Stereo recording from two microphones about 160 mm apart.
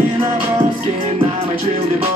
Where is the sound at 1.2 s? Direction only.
35° right (ahead or behind).